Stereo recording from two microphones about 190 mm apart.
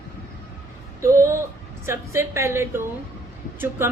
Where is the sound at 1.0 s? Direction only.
15° right (ahead or behind).